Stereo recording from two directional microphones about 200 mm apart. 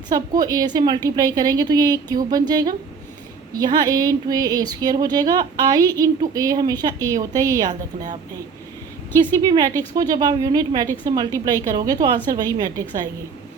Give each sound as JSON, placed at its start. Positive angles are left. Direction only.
{"t": 0.1, "sound": "speech", "side_deg": -20}
{"t": 9.3, "sound": "speech", "side_deg": -20}